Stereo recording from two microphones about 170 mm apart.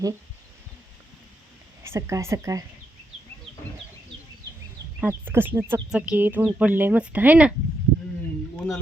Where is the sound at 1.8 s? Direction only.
15° right (ahead or behind).